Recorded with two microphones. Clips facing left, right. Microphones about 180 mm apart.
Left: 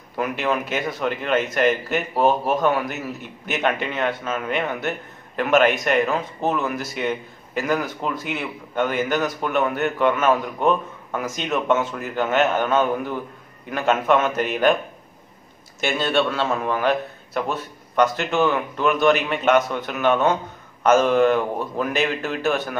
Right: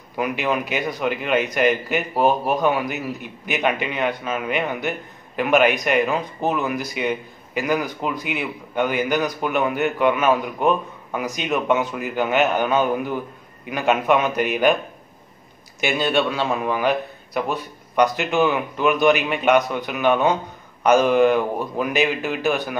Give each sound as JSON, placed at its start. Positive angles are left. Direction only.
{"t": 0.1, "sound": "a man's voice", "side_deg": -5}
{"t": 15.8, "sound": "a man's voice", "side_deg": -5}
{"t": 18.0, "sound": "a man's voice", "side_deg": 0}